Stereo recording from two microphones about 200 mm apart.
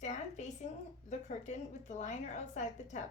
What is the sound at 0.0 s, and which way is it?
A woman's voice, 35° left (ahead or behind).